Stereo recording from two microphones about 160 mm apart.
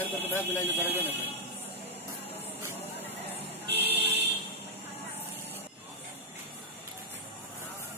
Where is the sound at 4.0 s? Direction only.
90° right.